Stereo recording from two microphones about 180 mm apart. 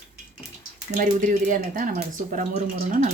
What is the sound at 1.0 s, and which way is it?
Speech, 45° right (ahead or behind).